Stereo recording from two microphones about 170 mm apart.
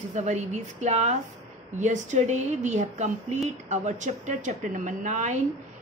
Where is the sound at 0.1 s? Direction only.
40° right (ahead or behind).